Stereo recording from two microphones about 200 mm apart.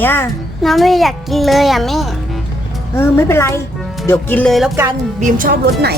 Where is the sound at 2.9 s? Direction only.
10° left (ahead or behind).